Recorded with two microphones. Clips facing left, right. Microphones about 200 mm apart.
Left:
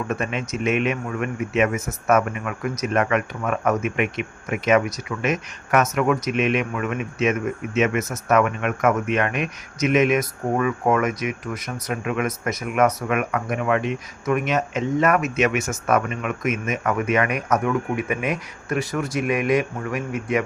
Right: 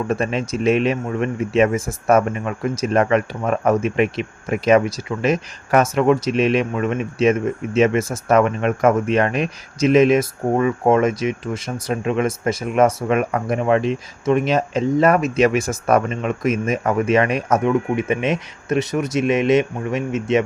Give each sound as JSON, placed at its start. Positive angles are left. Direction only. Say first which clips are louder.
{"t": 0.1, "sound": "a man's voice", "louder": "right 5 dB", "side_deg": -35}